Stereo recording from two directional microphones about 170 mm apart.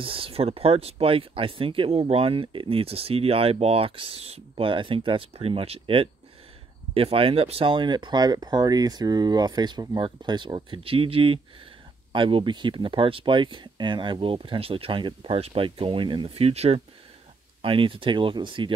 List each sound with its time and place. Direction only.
0.0 s speech: 30° right (ahead or behind)